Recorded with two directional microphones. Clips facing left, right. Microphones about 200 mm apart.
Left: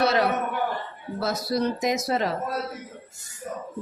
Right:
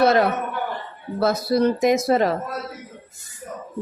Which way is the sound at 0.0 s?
50° right (ahead or behind).